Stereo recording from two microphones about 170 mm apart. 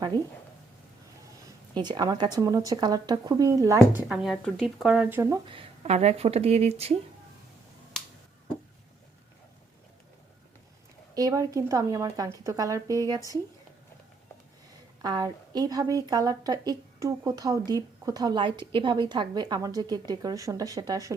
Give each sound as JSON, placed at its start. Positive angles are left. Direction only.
{"t": 0.1, "sound": "speech", "side_deg": -25}
{"t": 1.5, "sound": "speech", "side_deg": -25}
{"t": 4.1, "sound": "speech", "side_deg": 0}
{"t": 5.5, "sound": "speech", "side_deg": -35}
{"t": 11.1, "sound": "speech", "side_deg": -20}
{"t": 15.0, "sound": "speech", "side_deg": -25}